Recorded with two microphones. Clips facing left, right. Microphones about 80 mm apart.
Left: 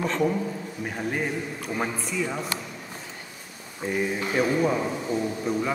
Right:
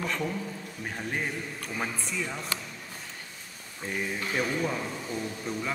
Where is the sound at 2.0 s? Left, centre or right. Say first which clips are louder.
Left 5 dB; centre.